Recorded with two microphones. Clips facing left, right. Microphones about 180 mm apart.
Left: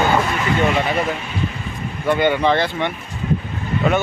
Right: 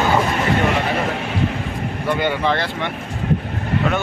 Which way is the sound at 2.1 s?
Centre (ahead or behind).